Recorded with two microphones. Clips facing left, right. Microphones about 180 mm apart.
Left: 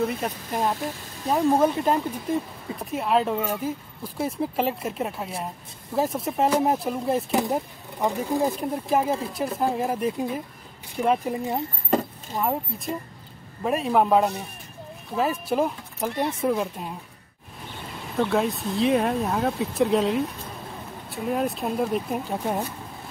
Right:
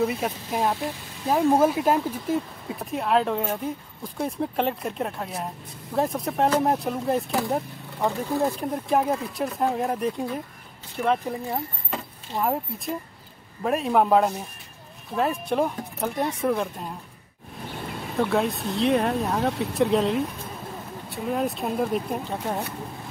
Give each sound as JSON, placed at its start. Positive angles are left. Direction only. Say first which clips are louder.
{"t": 0.0, "sound": "speech", "louder": "right 1 dB", "side_deg": -5}
{"t": 7.2, "sound": "speech", "louder": "left 1 dB", "side_deg": 20}
{"t": 8.5, "sound": "speech", "louder": "even", "side_deg": 0}
{"t": 11.0, "sound": "speech", "louder": "left 1 dB", "side_deg": 15}
{"t": 11.9, "sound": "chop", "louder": "left 12 dB", "side_deg": 40}
{"t": 12.4, "sound": "speech", "louder": "right 1 dB", "side_deg": 0}
{"t": 18.1, "sound": "speech", "louder": "even", "side_deg": 0}